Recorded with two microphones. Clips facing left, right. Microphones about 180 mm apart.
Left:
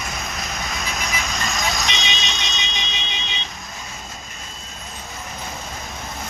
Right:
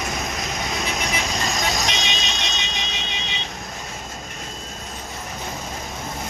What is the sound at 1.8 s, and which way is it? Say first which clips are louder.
Music: right 1 dB; 45° right (ahead or behind).